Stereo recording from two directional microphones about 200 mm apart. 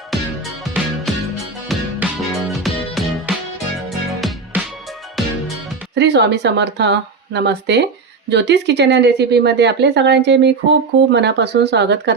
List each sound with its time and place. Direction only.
0.1 s music: centre (ahead or behind)
5.9 s speech: 60° right (ahead or behind)